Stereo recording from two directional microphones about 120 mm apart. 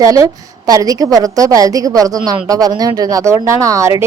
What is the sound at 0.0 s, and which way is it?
A woman's voice, 30° right (ahead or behind).